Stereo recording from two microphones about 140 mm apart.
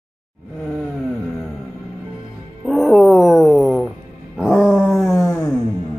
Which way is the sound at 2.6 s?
Centre (ahead or behind).